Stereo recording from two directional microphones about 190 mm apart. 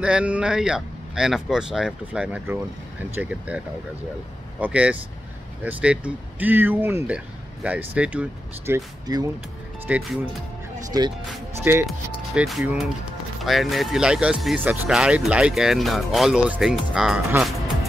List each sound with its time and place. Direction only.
0.0 s speech: 5° right (ahead or behind)
10.9 s speech: 20° right (ahead or behind)
11.7 s speech: 10° right (ahead or behind)